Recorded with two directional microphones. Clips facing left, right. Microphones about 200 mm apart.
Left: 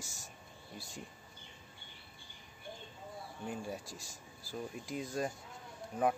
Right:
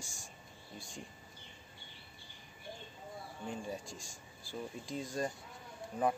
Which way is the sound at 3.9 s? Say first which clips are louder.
Even; 40° left (ahead or behind).